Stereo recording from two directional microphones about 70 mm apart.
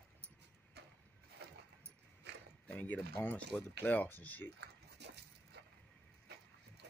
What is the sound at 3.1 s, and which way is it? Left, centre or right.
Speech, left.